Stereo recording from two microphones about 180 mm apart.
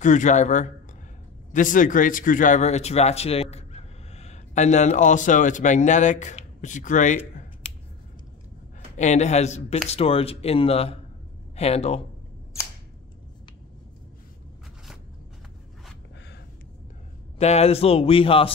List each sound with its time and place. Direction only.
0.0 s speech: 45° left (ahead or behind)
8.9 s speech: 40° left (ahead or behind)
17.4 s speech: 35° left (ahead or behind)